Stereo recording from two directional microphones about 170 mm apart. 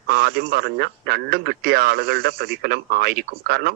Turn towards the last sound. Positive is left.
turn(degrees=-65)  # may be behind; listen again after turning